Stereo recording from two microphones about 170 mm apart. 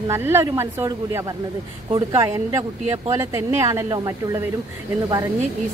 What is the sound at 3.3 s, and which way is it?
Speech, 15° right (ahead or behind).